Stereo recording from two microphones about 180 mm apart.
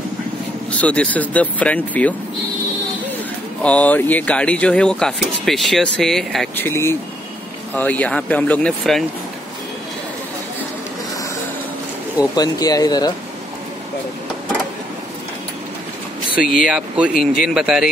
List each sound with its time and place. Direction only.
0.7 s speech: 5° left (ahead or behind)
3.6 s speech: 10° left (ahead or behind)
12.4 s speech: 20° left (ahead or behind)
16.6 s speech: 5° right (ahead or behind)